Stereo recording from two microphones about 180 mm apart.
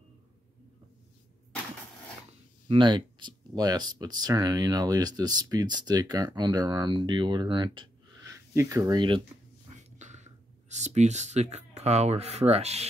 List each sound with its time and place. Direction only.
2.7 s speech: 25° right (ahead or behind)
9.8 s a sound: 40° right (ahead or behind)
11.5 s speech: 40° right (ahead or behind)